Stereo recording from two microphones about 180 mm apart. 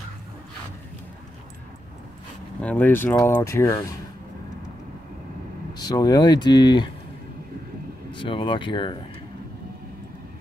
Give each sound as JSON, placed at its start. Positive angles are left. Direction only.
{"t": 2.6, "sound": "speech", "side_deg": 10}
{"t": 5.8, "sound": "speech", "side_deg": 20}
{"t": 8.1, "sound": "speech", "side_deg": 30}